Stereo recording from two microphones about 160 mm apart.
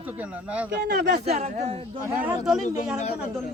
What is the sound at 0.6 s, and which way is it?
Speech, 90° right.